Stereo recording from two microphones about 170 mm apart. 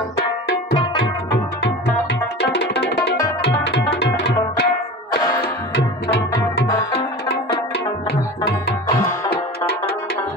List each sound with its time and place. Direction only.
1.3 s music: 70° left (ahead or behind)
2.5 s music: 80° left